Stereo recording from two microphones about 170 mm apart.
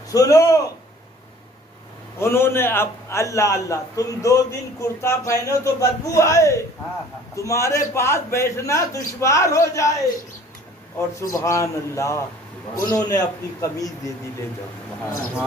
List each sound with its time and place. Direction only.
0.1 s a man's voice: 20° left (ahead or behind)
2.1 s a man's voice: 15° left (ahead or behind)
11.1 s a man's voice: 20° left (ahead or behind)